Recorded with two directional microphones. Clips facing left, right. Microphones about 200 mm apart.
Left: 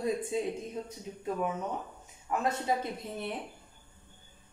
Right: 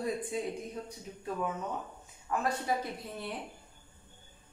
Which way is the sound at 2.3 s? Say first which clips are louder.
Left 2 dB; 20° left (ahead or behind).